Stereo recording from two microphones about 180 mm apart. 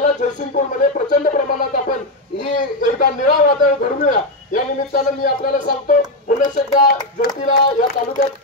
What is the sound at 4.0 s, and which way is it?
A man's voice, 50° left (ahead or behind).